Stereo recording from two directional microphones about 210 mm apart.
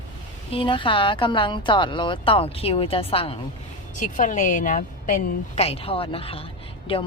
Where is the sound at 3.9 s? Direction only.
35° left (ahead or behind).